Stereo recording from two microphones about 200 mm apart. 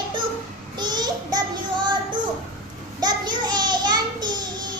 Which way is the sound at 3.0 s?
20° right (ahead or behind).